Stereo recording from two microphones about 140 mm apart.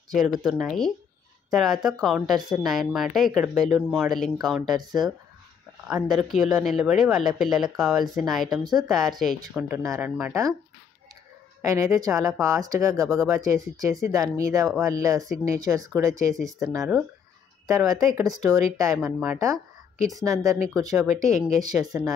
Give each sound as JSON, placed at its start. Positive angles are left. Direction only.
{"t": 0.1, "sound": "speech", "side_deg": 0}
{"t": 6.3, "sound": "speech", "side_deg": -5}
{"t": 8.5, "sound": "speech", "side_deg": -30}
{"t": 8.8, "sound": "speech", "side_deg": 0}
{"t": 9.6, "sound": "speech", "side_deg": -15}
{"t": 11.6, "sound": "speech", "side_deg": -20}
{"t": 18.9, "sound": "speech", "side_deg": -5}
{"t": 19.3, "sound": "speech", "side_deg": -25}